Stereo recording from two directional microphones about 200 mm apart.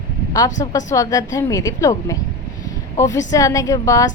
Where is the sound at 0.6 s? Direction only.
20° left (ahead or behind).